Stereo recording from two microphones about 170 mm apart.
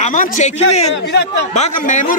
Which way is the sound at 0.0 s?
45° left (ahead or behind).